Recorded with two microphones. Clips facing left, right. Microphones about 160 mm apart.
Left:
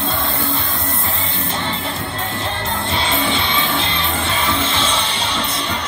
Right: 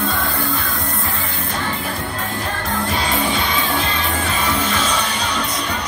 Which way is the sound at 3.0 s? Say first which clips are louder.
Even; 25° left (ahead or behind).